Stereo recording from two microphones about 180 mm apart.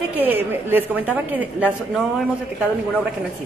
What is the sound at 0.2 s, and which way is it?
Speech, 10° right (ahead or behind).